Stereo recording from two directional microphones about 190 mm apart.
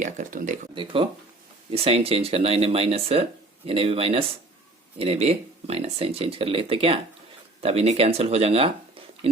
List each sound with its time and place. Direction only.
0.0 s speech: 45° right (ahead or behind)
0.7 s speech: 25° right (ahead or behind)